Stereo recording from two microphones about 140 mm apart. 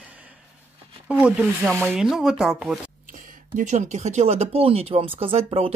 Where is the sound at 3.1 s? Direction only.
60° right (ahead or behind).